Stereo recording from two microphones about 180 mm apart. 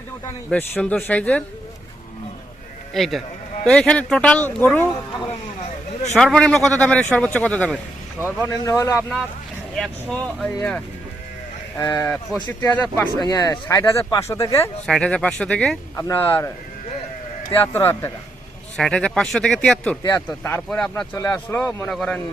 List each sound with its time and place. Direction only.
0.5 s speech: 10° left (ahead or behind)
2.9 s speech: centre (ahead or behind)
6.1 s speech: 5° left (ahead or behind)
8.4 s speech: 15° left (ahead or behind)
9.0 s speech: centre (ahead or behind)
11.8 s speech: 15° left (ahead or behind)
13.1 s speech: 20° left (ahead or behind)
14.8 s speech: 5° left (ahead or behind)
17.5 s speech: 15° left (ahead or behind)
20.0 s speech: 20° left (ahead or behind); by 22.2 s 5° left (ahead or behind)